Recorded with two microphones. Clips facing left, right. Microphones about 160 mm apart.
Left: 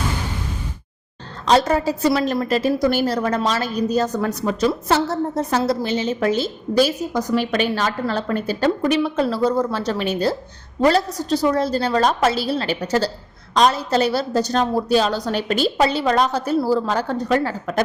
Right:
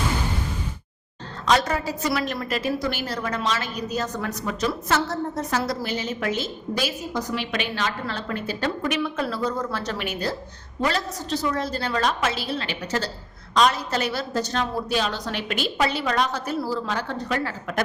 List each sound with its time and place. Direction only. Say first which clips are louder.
1.5 s a woman's voice: left 5 dB; 30° left (ahead or behind)